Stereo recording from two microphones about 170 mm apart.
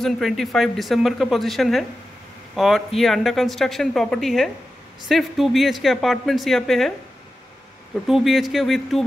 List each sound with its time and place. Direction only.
0.0 s a man's voice: centre (ahead or behind)
7.9 s speech: centre (ahead or behind)